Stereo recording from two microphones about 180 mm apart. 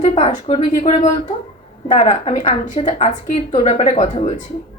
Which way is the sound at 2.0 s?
40° left (ahead or behind).